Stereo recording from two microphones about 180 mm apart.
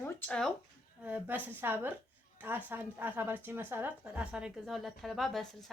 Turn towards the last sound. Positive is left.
turn(degrees=0)  # may be behind; listen again after turning